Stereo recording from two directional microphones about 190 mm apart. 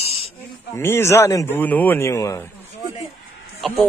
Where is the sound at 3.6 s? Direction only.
Centre (ahead or behind).